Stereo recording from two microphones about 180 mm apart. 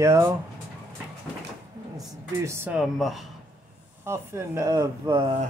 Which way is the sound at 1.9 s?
15° right (ahead or behind).